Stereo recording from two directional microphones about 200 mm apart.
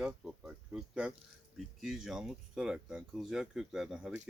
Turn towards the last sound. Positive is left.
turn(degrees=-5)  # may be behind; listen again after turning